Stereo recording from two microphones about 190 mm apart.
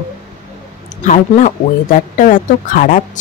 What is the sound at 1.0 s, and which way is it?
Speech, 40° left (ahead or behind).